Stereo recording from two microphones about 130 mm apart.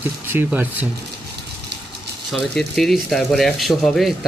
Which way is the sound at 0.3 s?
15° right (ahead or behind).